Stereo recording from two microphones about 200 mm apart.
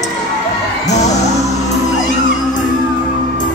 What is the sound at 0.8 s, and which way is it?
Music, 35° left (ahead or behind).